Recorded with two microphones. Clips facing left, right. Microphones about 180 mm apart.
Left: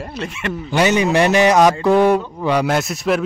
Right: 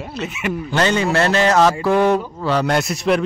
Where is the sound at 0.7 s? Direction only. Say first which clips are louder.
Left 3 dB; 15° left (ahead or behind).